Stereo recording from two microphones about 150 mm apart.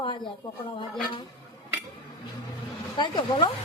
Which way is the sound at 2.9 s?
30° left (ahead or behind).